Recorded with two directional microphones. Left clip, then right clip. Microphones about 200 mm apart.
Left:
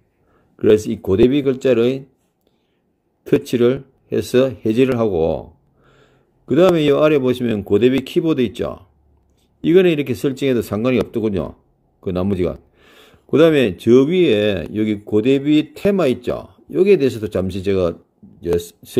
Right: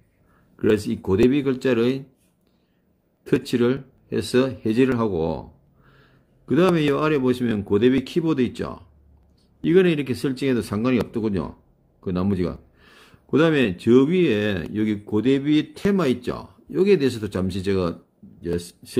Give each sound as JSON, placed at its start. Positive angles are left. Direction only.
{"t": 0.6, "sound": "speech", "side_deg": 15}
{"t": 3.3, "sound": "speech", "side_deg": 15}